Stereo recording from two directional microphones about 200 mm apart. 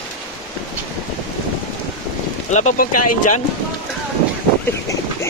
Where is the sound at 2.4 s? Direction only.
35° left (ahead or behind).